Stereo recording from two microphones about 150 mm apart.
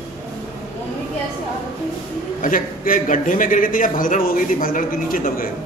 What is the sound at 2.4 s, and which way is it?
A man's voice, 65° left (ahead or behind).